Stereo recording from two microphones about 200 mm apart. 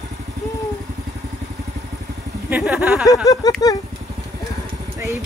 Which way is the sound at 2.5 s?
5° right (ahead or behind).